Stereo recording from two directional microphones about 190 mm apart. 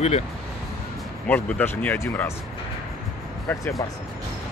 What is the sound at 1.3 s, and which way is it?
Speech, 5° left (ahead or behind).